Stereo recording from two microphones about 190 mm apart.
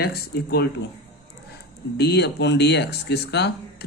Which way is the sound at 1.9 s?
60° left (ahead or behind).